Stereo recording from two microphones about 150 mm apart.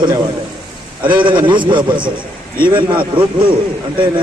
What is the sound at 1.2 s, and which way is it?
A man's voice, 30° right (ahead or behind).